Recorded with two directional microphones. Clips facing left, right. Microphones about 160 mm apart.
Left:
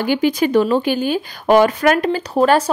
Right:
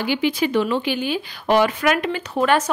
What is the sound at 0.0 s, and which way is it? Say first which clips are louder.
Speech: left 4 dB; 45° left (ahead or behind).